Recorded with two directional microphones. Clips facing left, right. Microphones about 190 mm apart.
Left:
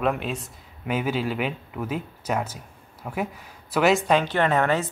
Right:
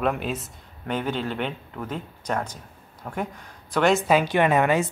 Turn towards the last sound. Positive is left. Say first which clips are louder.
# right 2 dB
turn(degrees=-15)  # may be behind; listen again after turning